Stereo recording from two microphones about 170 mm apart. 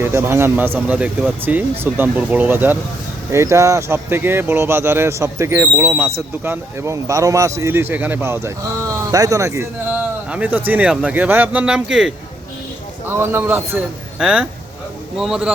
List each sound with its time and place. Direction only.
0.0 s speech: 15° right (ahead or behind)
13.1 s a man's voice: 15° right (ahead or behind)